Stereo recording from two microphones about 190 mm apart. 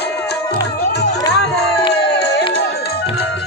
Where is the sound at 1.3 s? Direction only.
60° left (ahead or behind).